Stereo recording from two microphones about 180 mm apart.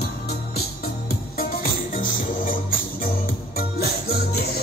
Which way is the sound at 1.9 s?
50° left (ahead or behind).